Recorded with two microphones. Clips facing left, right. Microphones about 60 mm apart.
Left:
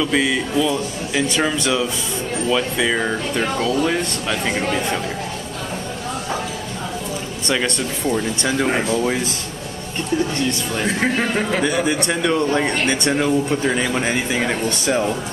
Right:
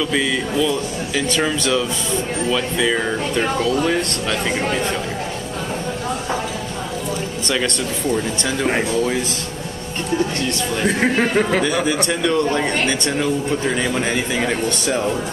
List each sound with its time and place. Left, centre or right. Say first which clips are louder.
0.0 s speech: left 1 dB; centre
7.5 s speech: left 1 dB; centre
8.6 s speech: right 4 dB; centre
10.8 s speech: right 3 dB; centre
11.6 s speech: even; centre